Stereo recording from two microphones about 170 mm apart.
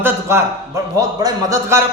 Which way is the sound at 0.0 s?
15° right (ahead or behind).